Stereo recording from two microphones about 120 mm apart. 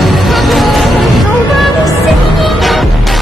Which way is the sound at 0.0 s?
Centre (ahead or behind).